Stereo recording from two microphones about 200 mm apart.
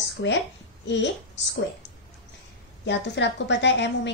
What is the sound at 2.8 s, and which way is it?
A woman's voice, 60° left (ahead or behind).